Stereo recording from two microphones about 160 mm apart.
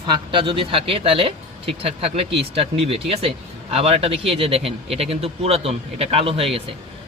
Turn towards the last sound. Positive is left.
turn(degrees=-35)  # may be behind; listen again after turning